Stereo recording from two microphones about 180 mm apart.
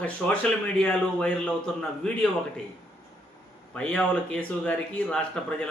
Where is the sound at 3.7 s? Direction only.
5° left (ahead or behind).